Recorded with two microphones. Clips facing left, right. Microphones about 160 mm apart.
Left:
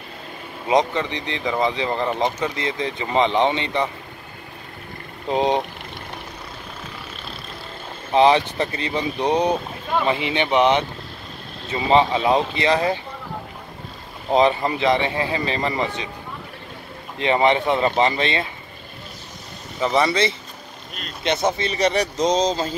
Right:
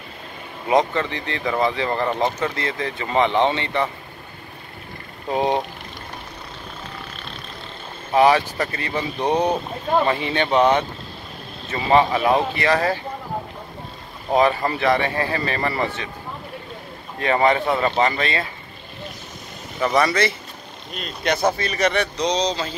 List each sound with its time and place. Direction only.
0.7 s speech: 20° left (ahead or behind)
5.3 s speech: 20° left (ahead or behind)
8.1 s speech: 20° left (ahead or behind)
14.3 s speech: 20° left (ahead or behind)
17.2 s speech: 20° left (ahead or behind)
19.8 s speech: 20° left (ahead or behind); by 22.5 s 45° left (ahead or behind)